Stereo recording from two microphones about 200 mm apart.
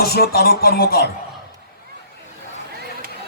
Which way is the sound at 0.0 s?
50° left (ahead or behind).